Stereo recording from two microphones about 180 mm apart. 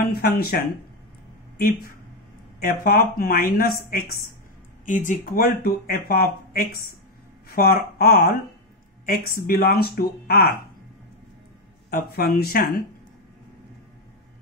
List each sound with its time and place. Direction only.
0.1 s speech: 60° left (ahead or behind)
2.6 s speech: 55° left (ahead or behind)
4.8 s speech: 45° left (ahead or behind)
11.9 s speech: 60° left (ahead or behind)